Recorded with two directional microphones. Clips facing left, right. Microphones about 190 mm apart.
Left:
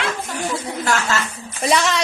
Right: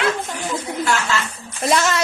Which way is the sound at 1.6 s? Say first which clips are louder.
Even; centre (ahead or behind).